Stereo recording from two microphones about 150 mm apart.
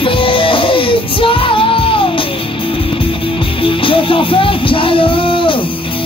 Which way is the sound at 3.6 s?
35° left (ahead or behind).